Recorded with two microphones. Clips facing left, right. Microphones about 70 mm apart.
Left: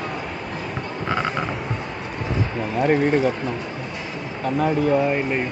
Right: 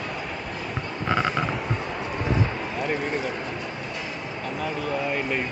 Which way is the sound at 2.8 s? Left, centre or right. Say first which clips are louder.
Left 10 dB; left.